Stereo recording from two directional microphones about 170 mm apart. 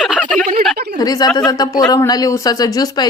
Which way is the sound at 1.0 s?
20° left (ahead or behind).